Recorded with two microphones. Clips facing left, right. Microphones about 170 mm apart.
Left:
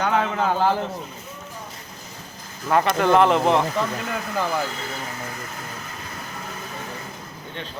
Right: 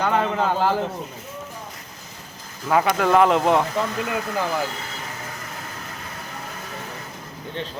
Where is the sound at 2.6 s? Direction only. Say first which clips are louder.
Even; centre (ahead or behind).